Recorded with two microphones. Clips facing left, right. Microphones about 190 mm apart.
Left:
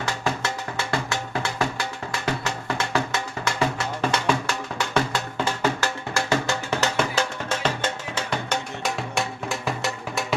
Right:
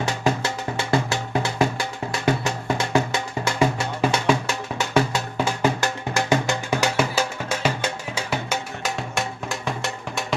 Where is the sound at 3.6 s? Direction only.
10° right (ahead or behind).